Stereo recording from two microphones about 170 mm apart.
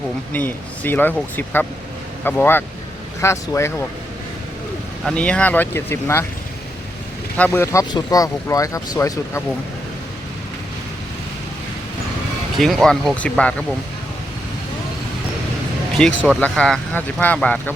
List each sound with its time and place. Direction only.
0.3 s speech: 10° left (ahead or behind)
5.0 s speech: 5° left (ahead or behind)
7.3 s speech: 10° left (ahead or behind)
12.5 s speech: centre (ahead or behind)
16.0 s speech: 5° left (ahead or behind)